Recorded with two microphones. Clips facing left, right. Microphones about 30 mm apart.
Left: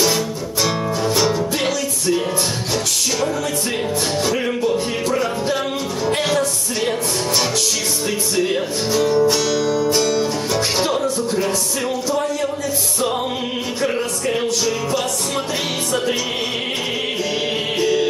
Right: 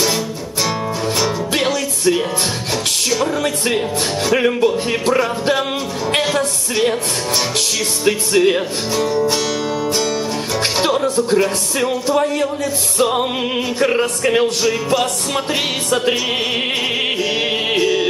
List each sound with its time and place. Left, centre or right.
4.7 s music: right
8.0 s music: right
8.9 s music: centre
12.1 s music: right
13.7 s music: right
17.7 s music: centre